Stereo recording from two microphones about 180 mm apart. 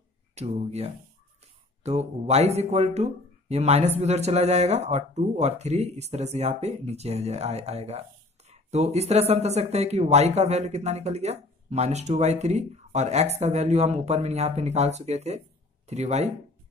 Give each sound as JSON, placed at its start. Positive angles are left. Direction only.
{"t": 0.3, "sound": "speech", "side_deg": -40}